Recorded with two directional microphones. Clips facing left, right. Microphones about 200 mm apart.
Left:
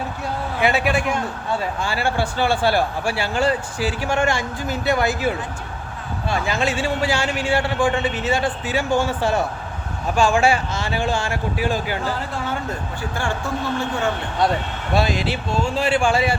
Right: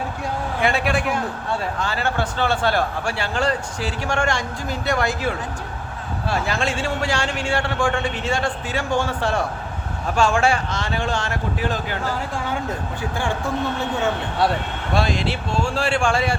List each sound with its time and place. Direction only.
0.6 s a man's voice: 5° left (ahead or behind)
1.8 s a man's voice: 10° left (ahead or behind)
13.0 s speech: 15° right (ahead or behind)
14.9 s a man's voice: 5° left (ahead or behind)